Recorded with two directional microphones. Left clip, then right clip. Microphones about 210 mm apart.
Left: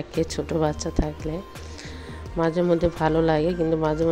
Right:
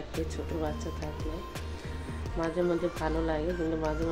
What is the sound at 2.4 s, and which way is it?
Speech, 40° left (ahead or behind).